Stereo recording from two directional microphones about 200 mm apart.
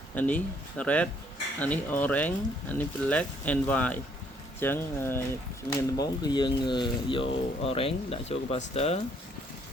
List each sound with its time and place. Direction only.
0.1 s speech: 10° left (ahead or behind); by 9.0 s 30° left (ahead or behind)